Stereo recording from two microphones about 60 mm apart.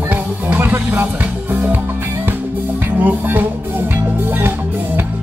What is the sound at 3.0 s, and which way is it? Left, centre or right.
Music, right.